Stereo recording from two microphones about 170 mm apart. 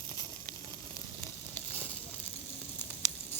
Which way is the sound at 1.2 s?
10° left (ahead or behind).